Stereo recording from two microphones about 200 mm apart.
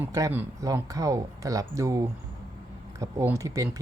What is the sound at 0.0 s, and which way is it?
Speech, 15° right (ahead or behind).